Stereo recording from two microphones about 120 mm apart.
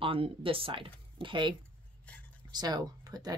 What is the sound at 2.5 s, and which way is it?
Speech, 35° right (ahead or behind).